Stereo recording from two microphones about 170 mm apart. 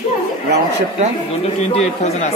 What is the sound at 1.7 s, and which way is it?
Speech, 40° left (ahead or behind).